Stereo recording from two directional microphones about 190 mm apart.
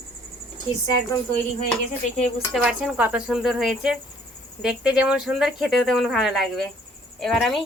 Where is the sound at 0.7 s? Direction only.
20° left (ahead or behind).